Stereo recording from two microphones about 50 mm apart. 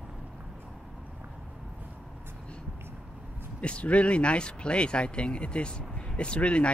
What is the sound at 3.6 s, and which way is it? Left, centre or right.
Speech, left.